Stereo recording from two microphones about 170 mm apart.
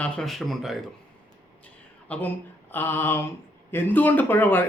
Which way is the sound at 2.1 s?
10° left (ahead or behind).